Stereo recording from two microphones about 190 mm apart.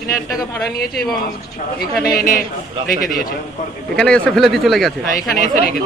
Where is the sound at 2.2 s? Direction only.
45° left (ahead or behind).